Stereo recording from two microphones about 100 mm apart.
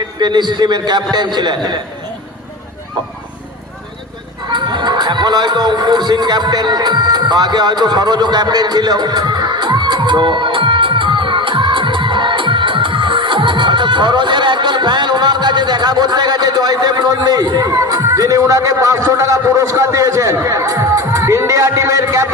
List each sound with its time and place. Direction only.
0.2 s a man's voice: 45° right (ahead or behind)
4.5 s speech: 50° right (ahead or behind)